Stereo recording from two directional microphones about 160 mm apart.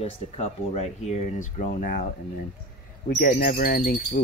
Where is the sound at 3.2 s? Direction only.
55° left (ahead or behind).